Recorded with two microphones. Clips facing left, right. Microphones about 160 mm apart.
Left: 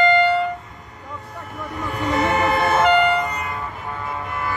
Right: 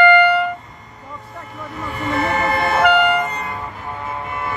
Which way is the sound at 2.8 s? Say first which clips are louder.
Right 2 dB; 65° right (ahead or behind).